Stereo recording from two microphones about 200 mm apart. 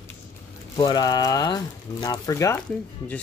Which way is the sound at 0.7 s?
20° left (ahead or behind).